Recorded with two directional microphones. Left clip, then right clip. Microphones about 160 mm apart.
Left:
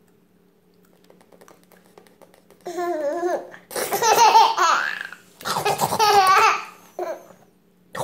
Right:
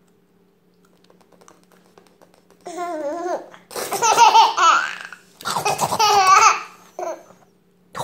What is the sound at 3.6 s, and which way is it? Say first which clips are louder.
Laughter: left 1 dB; centre (ahead or behind).